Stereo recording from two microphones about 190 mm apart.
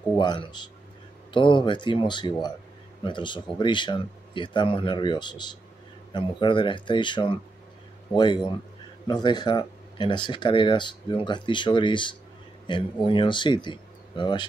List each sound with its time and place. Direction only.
0.2 s speech: 25° left (ahead or behind)